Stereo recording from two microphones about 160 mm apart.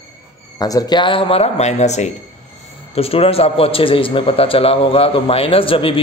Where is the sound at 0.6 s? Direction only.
25° left (ahead or behind).